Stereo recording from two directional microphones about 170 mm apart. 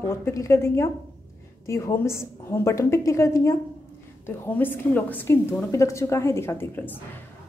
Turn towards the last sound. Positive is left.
turn(degrees=10)  # may be behind; listen again after turning